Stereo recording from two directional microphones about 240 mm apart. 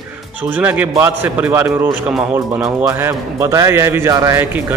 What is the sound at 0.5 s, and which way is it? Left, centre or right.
Speech, centre.